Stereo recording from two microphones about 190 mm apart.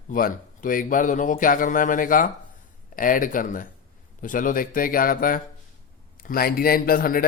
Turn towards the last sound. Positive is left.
turn(degrees=50)  # may be behind; listen again after turning